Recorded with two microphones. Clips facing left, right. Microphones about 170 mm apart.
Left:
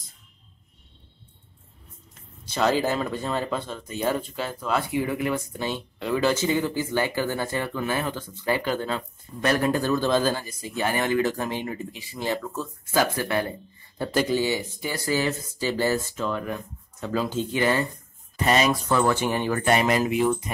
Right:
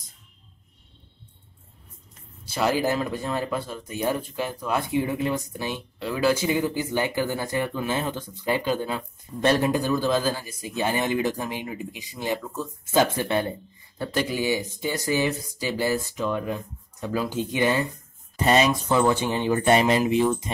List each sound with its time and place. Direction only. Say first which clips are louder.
2.4 s speech: left 1 dB; 10° right (ahead or behind)
5.9 s speech: even; 5° right (ahead or behind); by 13.6 s 25° right (ahead or behind)
13.9 s speech: left 2 dB; centre (ahead or behind)
14.3 s speech: left 1 dB; 15° right (ahead or behind)
18.3 s speech: right 1 dB; 30° right (ahead or behind)